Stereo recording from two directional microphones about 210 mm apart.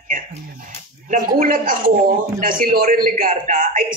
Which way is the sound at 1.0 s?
40° right (ahead or behind).